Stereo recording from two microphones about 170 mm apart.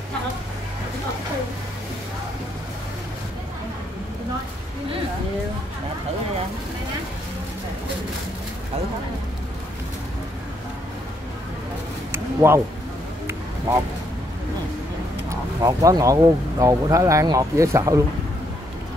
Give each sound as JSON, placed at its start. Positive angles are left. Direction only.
{"t": 12.4, "sound": "speech", "side_deg": -15}
{"t": 15.2, "sound": "speech", "side_deg": -20}